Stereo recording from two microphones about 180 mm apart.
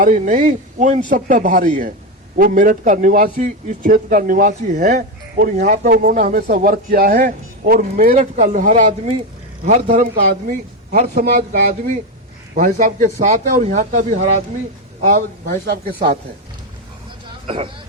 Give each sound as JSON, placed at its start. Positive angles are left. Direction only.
{"t": 0.0, "sound": "a man's voice", "side_deg": -45}
{"t": 17.4, "sound": "speech", "side_deg": -30}